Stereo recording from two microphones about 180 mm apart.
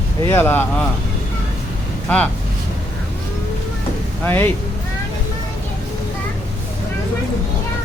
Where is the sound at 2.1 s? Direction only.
5° left (ahead or behind).